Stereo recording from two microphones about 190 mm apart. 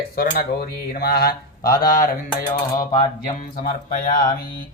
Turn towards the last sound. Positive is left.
turn(degrees=45)  # may be behind; listen again after turning